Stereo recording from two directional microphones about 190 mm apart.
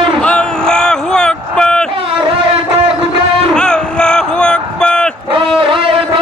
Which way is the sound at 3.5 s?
5° left (ahead or behind).